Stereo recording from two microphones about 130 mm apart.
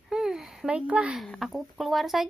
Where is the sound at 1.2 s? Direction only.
Centre (ahead or behind).